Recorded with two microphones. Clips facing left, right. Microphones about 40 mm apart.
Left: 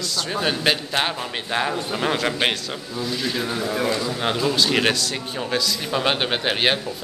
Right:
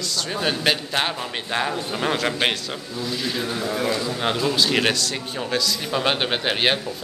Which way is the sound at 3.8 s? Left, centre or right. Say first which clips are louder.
Even; centre.